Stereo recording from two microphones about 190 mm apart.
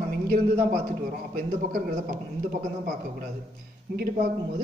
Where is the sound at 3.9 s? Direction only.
50° right (ahead or behind).